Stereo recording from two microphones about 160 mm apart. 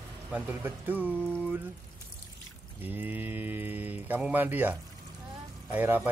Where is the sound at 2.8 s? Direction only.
10° right (ahead or behind).